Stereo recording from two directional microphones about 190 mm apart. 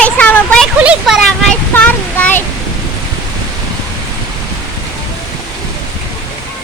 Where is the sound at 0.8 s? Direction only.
5° right (ahead or behind).